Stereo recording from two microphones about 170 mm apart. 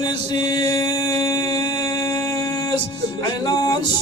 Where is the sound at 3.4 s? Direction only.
25° left (ahead or behind).